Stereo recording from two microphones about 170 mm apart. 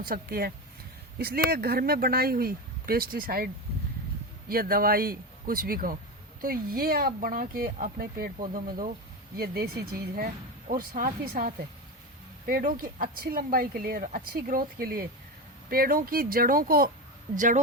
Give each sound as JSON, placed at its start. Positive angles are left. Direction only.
{"t": 0.0, "sound": "speech", "side_deg": -60}
{"t": 10.7, "sound": "speech", "side_deg": -55}
{"t": 17.3, "sound": "a woman's voice", "side_deg": -50}